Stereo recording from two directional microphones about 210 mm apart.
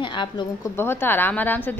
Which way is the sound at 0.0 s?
20° left (ahead or behind).